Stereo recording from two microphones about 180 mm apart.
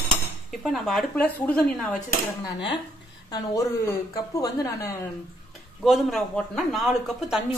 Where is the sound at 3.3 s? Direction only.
20° left (ahead or behind).